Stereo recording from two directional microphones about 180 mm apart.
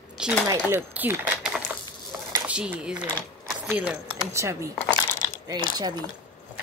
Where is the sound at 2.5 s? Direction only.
5° right (ahead or behind).